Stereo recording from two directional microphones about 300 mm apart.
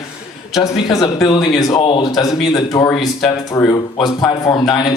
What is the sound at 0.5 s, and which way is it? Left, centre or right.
Speech, centre.